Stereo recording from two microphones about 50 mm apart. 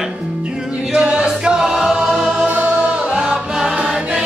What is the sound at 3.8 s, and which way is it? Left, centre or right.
Choir, centre.